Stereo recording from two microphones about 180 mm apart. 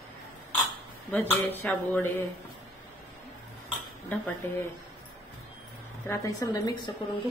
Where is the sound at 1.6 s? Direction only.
10° left (ahead or behind).